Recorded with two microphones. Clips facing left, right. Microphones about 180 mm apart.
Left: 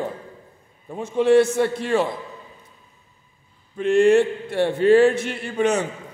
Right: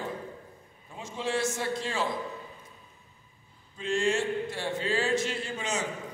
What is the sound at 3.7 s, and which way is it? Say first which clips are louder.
A man's voice: left 13 dB; 65° left (ahead or behind).